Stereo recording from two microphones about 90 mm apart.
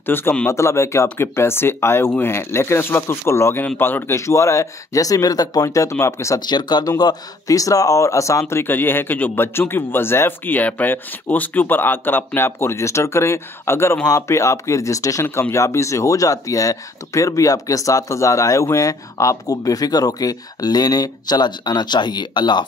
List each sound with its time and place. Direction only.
0.0 s a man's voice: 25° left (ahead or behind)
6.4 s a man's voice: 55° left (ahead or behind)